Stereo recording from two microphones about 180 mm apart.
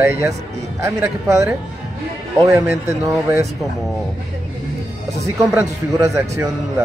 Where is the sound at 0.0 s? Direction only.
15° right (ahead or behind).